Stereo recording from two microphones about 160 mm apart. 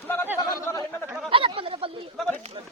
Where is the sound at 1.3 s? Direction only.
35° right (ahead or behind).